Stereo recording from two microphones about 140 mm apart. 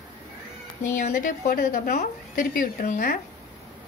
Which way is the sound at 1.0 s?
75° left (ahead or behind).